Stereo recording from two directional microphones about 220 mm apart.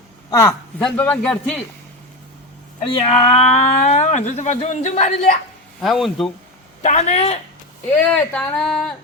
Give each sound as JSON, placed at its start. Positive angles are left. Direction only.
{"t": 0.3, "sound": "speech", "side_deg": 15}
{"t": 3.0, "sound": "speech", "side_deg": 25}
{"t": 5.8, "sound": "speech", "side_deg": 0}
{"t": 6.8, "sound": "speech", "side_deg": 30}
{"t": 7.9, "sound": "speech", "side_deg": 5}